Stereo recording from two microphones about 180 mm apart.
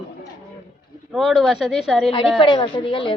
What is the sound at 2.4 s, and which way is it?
Speech, 30° left (ahead or behind).